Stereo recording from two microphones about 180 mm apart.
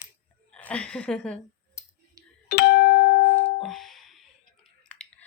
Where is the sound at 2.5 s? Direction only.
65° left (ahead or behind).